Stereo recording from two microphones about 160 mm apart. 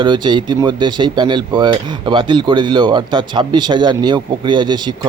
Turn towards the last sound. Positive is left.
turn(degrees=-25)  # may be behind; listen again after turning